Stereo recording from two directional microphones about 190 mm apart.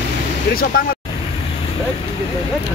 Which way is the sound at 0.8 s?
50° left (ahead or behind).